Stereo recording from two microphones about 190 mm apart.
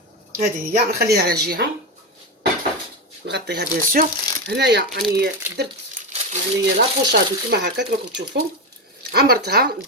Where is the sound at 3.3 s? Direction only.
60° right (ahead or behind).